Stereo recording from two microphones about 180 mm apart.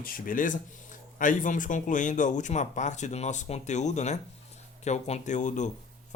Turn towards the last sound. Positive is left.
turn(degrees=40)  # may be behind; listen again after turning